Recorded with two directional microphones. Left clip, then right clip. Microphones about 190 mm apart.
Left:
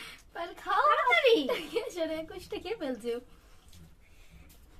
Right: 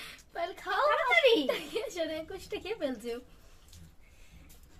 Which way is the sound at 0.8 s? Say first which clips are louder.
Even; 25° left (ahead or behind).